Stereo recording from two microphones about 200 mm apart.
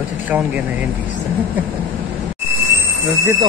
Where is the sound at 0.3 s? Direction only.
10° right (ahead or behind).